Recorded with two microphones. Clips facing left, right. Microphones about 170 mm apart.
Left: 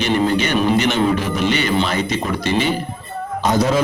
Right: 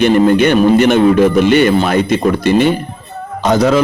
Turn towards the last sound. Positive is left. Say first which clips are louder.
# right 5 dB
turn(degrees=-75)  # may be behind; listen again after turning